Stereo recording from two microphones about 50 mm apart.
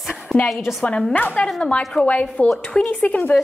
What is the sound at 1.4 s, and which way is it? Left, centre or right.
Speech, left.